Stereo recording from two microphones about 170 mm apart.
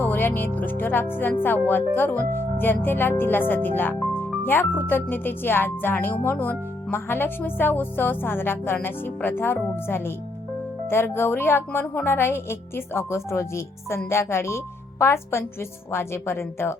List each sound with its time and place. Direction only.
0.0 s speech: 10° left (ahead or behind)